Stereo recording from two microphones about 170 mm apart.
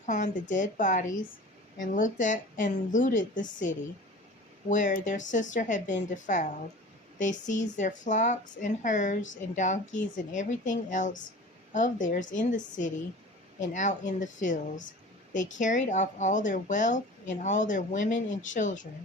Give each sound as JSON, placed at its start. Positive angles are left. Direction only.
{"t": 0.0, "sound": "speech", "side_deg": 45}